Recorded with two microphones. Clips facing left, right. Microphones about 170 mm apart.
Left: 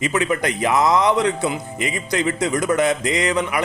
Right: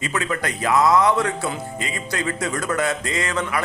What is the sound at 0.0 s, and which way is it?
A man's voice, 20° left (ahead or behind).